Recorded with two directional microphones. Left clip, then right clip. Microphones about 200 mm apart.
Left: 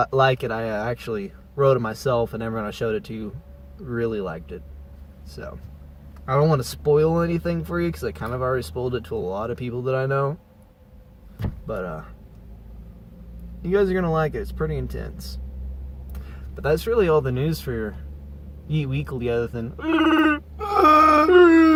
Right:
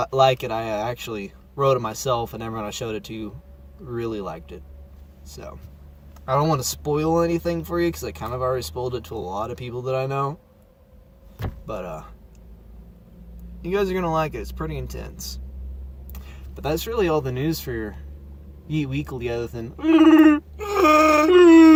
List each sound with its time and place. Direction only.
0.0 s speech: 25° right (ahead or behind)
6.2 s speech: 25° right (ahead or behind)
11.7 s speech: 25° right (ahead or behind)
13.6 s speech: 25° right (ahead or behind)
21.3 s whimper: 25° right (ahead or behind)